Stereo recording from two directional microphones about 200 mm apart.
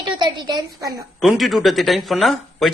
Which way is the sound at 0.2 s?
20° right (ahead or behind).